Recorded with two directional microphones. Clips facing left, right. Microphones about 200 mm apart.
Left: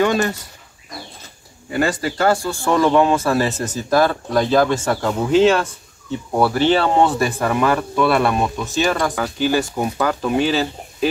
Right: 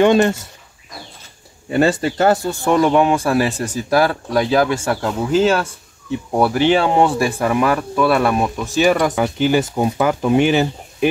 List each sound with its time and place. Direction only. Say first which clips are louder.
0.0 s speech: right 5 dB; 25° right (ahead or behind)
1.7 s speech: right 4 dB; 25° right (ahead or behind)